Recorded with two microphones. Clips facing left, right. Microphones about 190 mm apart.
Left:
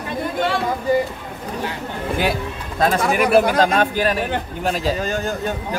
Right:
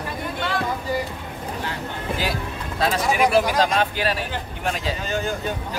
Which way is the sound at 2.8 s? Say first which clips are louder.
Left 3 dB; 50° left (ahead or behind).